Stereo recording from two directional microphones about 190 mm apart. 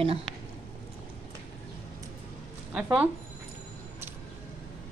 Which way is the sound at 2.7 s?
5° right (ahead or behind).